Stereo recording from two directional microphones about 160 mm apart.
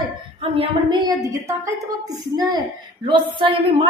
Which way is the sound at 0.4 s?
30° right (ahead or behind).